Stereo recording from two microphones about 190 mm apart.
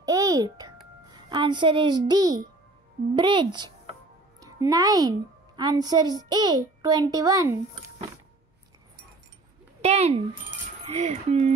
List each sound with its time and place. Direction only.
0.0 s music: 20° right (ahead or behind)
1.3 s a child's voice: 25° right (ahead or behind)
9.8 s speech: 35° right (ahead or behind)